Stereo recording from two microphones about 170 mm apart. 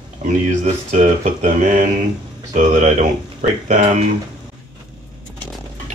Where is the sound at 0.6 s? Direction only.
45° right (ahead or behind).